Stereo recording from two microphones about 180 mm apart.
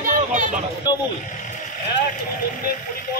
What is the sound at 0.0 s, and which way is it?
Vehicle, 45° right (ahead or behind).